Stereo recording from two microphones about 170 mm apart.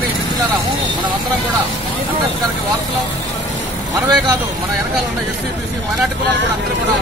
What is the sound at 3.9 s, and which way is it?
Speech, 20° right (ahead or behind).